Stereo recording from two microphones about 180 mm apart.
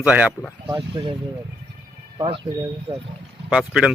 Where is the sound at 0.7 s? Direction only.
25° right (ahead or behind).